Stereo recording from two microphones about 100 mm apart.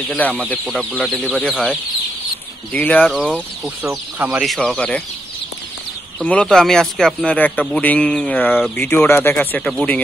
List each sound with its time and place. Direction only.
0.1 s speech: 10° left (ahead or behind)
2.7 s speech: 15° left (ahead or behind)
3.1 s speech: centre (ahead or behind)
4.2 s speech: 15° right (ahead or behind)
4.6 s speech: 10° left (ahead or behind)
6.1 s speech: 10° left (ahead or behind)
9.6 s speech: 5° left (ahead or behind)